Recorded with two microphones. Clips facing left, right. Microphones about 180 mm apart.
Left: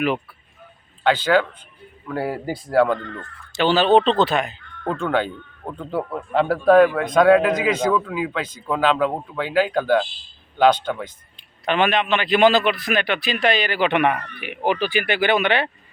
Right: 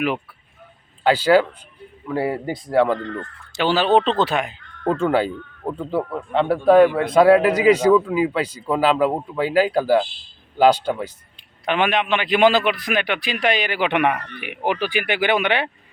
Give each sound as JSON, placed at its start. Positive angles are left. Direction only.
{"t": 1.0, "sound": "a man's voice", "side_deg": -10}
{"t": 6.8, "sound": "a man's voice", "side_deg": -30}
{"t": 7.2, "sound": "a man's voice", "side_deg": -5}